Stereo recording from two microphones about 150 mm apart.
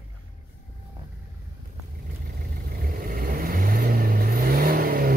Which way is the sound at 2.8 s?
75° right (ahead or behind).